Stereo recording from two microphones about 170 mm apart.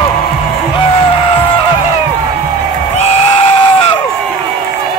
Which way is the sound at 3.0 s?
40° left (ahead or behind).